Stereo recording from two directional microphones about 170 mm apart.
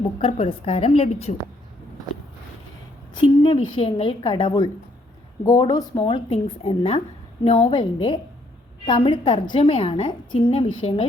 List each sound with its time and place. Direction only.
0.2 s a woman's voice: 35° left (ahead or behind)
3.2 s a woman's voice: 30° left (ahead or behind)